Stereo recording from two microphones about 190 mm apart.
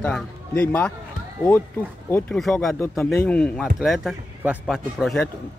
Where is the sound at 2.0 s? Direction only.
10° left (ahead or behind).